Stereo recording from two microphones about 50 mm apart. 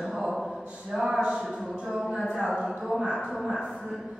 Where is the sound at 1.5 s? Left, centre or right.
Centre.